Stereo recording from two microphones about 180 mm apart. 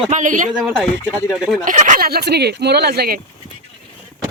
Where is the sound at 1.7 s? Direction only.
45° right (ahead or behind).